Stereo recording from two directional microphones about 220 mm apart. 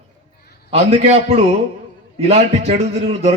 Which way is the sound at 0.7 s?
25° right (ahead or behind).